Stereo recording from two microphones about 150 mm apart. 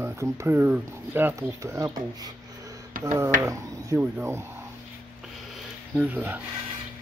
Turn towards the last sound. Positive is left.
turn(degrees=-10)  # may be behind; listen again after turning